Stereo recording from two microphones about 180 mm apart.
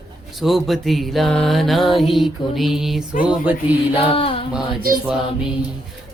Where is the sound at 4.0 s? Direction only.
30° left (ahead or behind).